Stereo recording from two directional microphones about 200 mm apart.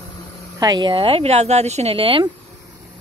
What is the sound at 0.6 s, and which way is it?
Speech, 20° right (ahead or behind).